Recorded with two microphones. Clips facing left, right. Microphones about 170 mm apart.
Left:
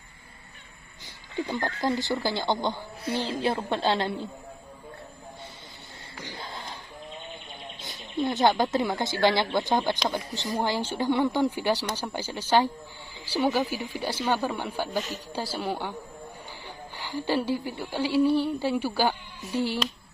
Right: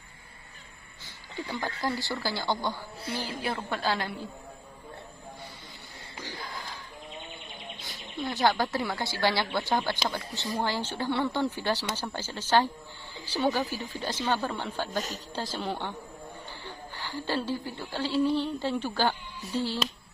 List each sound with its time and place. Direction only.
1.4 s speech: 15° left (ahead or behind)
6.2 s a sound: 25° left (ahead or behind)
7.8 s speech: 20° left (ahead or behind)
14.9 s speech: 40° right (ahead or behind)
15.3 s a woman's voice: 10° left (ahead or behind)